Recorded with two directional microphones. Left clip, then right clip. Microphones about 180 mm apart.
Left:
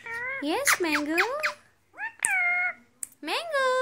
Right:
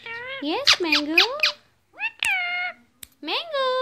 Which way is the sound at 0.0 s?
25° right (ahead or behind).